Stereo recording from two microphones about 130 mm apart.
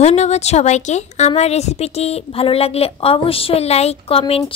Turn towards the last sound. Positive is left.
turn(degrees=45)  # may be behind; listen again after turning